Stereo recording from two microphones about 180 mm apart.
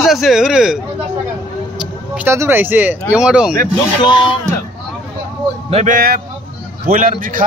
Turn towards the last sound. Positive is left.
turn(degrees=-50)  # may be behind; listen again after turning